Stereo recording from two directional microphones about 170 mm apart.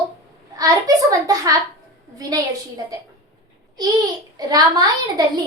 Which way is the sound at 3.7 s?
25° right (ahead or behind).